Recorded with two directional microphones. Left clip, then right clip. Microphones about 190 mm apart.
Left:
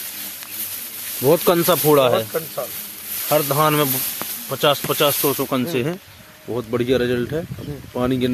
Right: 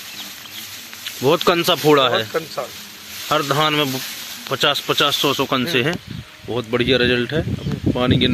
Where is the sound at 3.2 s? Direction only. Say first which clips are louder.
Even; 10° right (ahead or behind).